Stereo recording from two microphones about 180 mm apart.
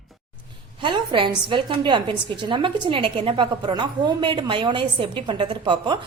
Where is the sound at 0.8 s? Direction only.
25° right (ahead or behind).